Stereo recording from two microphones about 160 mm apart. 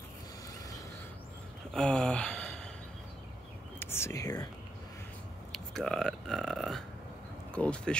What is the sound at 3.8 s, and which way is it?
Speech, 15° left (ahead or behind).